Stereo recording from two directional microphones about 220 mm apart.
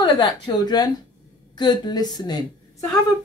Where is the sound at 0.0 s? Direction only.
20° left (ahead or behind).